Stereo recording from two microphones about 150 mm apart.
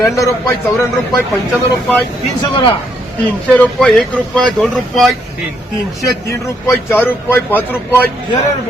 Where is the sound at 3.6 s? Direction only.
5° left (ahead or behind).